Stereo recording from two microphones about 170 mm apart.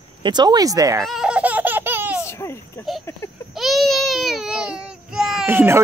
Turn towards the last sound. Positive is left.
turn(degrees=-10)  # may be behind; listen again after turning